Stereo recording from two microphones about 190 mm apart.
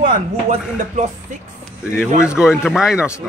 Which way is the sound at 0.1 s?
35° right (ahead or behind).